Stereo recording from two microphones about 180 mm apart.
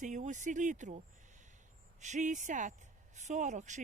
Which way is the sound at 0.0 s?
45° right (ahead or behind).